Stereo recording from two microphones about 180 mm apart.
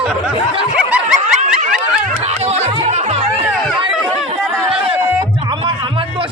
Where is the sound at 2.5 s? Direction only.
35° right (ahead or behind).